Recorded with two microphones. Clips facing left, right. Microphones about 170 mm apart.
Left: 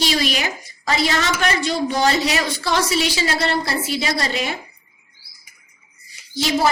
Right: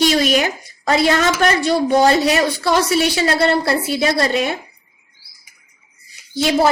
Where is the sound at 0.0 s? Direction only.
50° right (ahead or behind).